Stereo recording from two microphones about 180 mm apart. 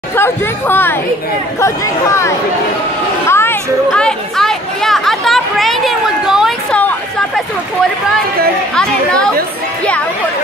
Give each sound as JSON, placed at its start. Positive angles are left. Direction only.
{"t": 0.1, "sound": "speech", "side_deg": 10}
{"t": 3.3, "sound": "chatter", "side_deg": 15}
{"t": 8.7, "sound": "speech", "side_deg": 5}